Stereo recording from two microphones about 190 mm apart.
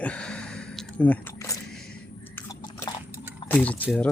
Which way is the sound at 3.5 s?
5° left (ahead or behind).